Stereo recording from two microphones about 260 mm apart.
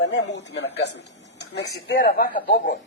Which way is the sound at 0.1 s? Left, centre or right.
Left.